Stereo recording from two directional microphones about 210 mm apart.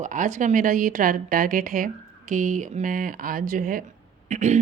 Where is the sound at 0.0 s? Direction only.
35° right (ahead or behind).